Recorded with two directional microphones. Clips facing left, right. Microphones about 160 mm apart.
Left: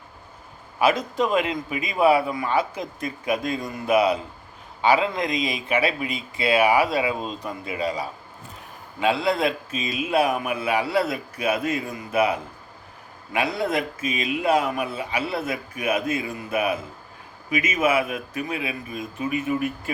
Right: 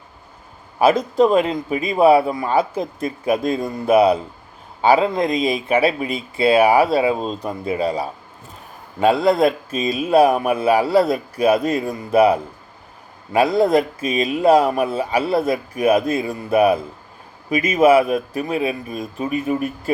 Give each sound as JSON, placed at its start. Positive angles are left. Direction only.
{"t": 0.8, "sound": "a man's voice", "side_deg": -35}